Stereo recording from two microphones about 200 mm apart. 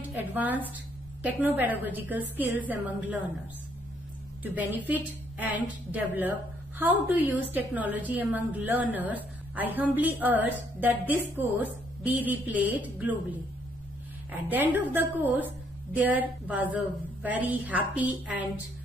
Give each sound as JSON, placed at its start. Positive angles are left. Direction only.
{"t": 0.0, "sound": "a woman's voice", "side_deg": -10}
{"t": 5.4, "sound": "a woman's voice", "side_deg": -10}
{"t": 14.5, "sound": "a woman's voice", "side_deg": -10}